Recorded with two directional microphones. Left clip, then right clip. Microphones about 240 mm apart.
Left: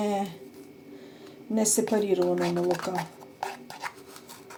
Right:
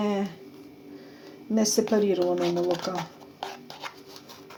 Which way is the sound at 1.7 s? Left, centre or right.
Centre.